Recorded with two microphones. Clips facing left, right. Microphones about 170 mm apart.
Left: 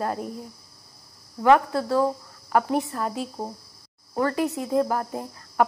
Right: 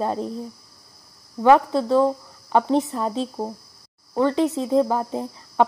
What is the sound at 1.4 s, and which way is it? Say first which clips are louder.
Speech: right 3 dB; 20° right (ahead or behind).